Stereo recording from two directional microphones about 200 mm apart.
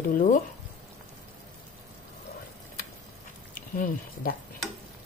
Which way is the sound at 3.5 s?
45° left (ahead or behind).